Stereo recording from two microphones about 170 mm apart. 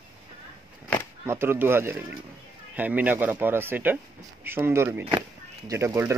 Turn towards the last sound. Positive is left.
turn(degrees=-15)  # may be behind; listen again after turning